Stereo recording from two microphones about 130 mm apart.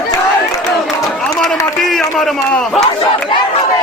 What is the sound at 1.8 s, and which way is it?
Speech, centre (ahead or behind).